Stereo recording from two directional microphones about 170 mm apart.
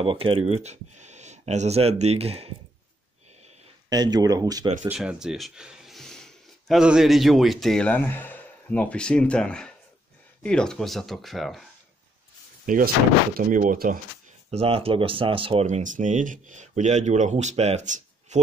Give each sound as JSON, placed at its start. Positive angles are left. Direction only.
{"t": 0.0, "sound": "speech", "side_deg": -30}
{"t": 3.9, "sound": "speech", "side_deg": -25}
{"t": 4.8, "sound": "speech", "side_deg": -5}
{"t": 12.6, "sound": "speech", "side_deg": -55}
{"t": 14.5, "sound": "speech", "side_deg": -35}
{"t": 15.6, "sound": "speech", "side_deg": -45}